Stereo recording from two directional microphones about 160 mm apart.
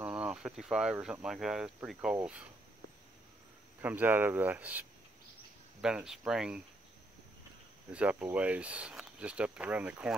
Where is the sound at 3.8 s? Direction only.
10° right (ahead or behind).